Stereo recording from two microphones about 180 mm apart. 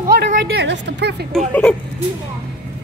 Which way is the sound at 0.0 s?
65° right (ahead or behind).